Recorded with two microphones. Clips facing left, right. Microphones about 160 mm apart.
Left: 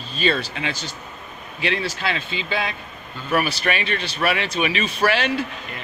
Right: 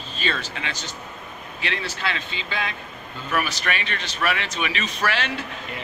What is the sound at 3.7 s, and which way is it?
Speech, 10° left (ahead or behind).